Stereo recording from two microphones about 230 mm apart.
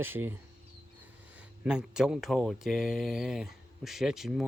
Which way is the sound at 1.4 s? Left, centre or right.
Centre.